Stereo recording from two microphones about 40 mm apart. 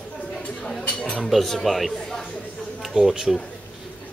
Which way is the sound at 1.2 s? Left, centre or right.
Centre.